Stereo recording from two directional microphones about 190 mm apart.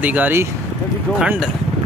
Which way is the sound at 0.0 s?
10° right (ahead or behind).